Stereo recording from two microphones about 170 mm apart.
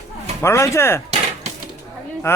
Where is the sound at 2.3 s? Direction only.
15° left (ahead or behind).